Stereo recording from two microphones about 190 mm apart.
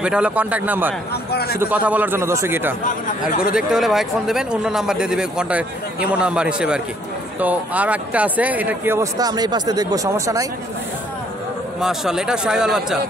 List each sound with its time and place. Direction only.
0.0 s speech: 5° right (ahead or behind)
1.3 s a man's voice: 55° left (ahead or behind)
1.6 s speech: 10° right (ahead or behind)
2.8 s speech: 45° left (ahead or behind)
3.5 s speech: centre (ahead or behind)
11.8 s speech: centre (ahead or behind)